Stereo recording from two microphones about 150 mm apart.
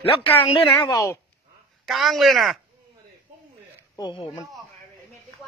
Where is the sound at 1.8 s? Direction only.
Centre (ahead or behind).